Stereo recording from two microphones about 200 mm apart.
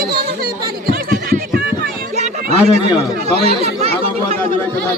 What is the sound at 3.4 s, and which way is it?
Speech, 30° right (ahead or behind).